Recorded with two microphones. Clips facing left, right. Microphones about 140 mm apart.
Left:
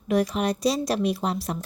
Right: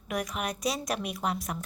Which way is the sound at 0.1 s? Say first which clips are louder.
Left 9 dB; 30° left (ahead or behind).